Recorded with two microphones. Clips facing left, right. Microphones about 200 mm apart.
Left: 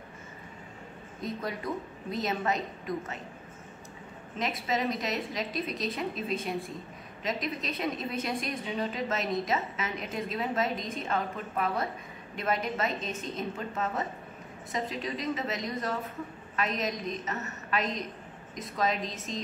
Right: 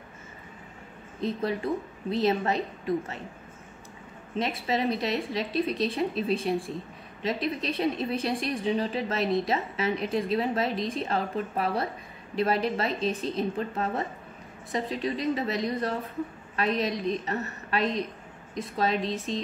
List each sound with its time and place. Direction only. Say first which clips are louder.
1.2 s a woman's voice: right 6 dB; 30° right (ahead or behind)
4.4 s a woman's voice: right 3 dB; 30° right (ahead or behind)